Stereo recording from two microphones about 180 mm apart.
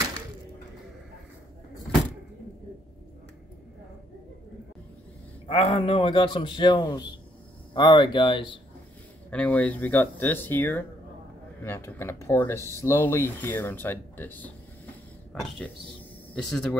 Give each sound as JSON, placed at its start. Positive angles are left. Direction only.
{"t": 5.5, "sound": "a man's voice", "side_deg": 30}
{"t": 9.3, "sound": "speech", "side_deg": 10}
{"t": 16.3, "sound": "speech", "side_deg": 0}